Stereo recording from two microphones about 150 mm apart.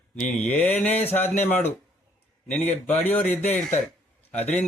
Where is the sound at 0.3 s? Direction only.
10° left (ahead or behind).